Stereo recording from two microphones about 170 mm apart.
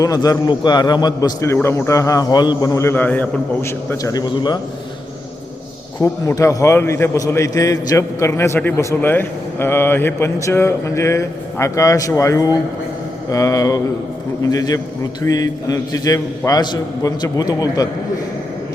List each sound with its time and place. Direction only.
0.0 s a man's voice: 20° left (ahead or behind)
6.0 s a man's voice: 15° left (ahead or behind)